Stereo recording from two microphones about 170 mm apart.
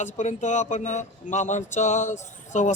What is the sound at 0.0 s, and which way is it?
A man's voice, 45° left (ahead or behind).